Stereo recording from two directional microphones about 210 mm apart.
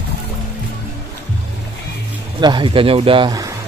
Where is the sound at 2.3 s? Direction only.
20° right (ahead or behind).